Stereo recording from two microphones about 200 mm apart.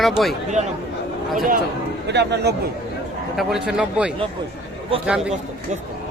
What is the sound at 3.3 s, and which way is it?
Speech, centre (ahead or behind).